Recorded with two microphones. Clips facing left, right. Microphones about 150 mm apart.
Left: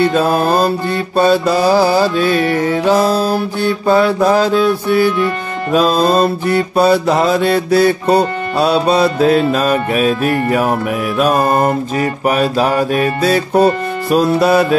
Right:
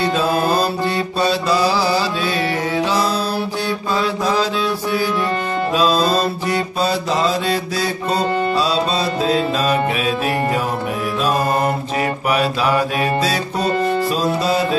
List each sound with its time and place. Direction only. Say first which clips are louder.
0.0 s mantra: left 5 dB; 55° left (ahead or behind)
1.1 s music: left 8 dB; 50° left (ahead or behind)
5.7 s mantra: left 5 dB; 50° left (ahead or behind)
11.1 s music: left 5 dB; 55° left (ahead or behind)
12.3 s mantra: left 4 dB; 45° left (ahead or behind); by 14.8 s 60° left (ahead or behind)